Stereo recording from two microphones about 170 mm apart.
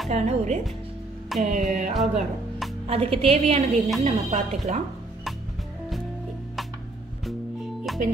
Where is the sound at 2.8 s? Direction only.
35° right (ahead or behind).